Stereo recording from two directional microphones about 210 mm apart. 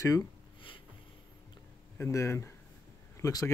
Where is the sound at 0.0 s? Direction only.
15° left (ahead or behind).